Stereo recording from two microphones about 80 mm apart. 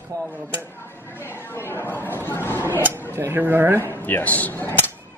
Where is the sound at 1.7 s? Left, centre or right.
Left.